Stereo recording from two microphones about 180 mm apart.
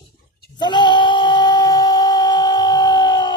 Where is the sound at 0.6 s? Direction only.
25° left (ahead or behind).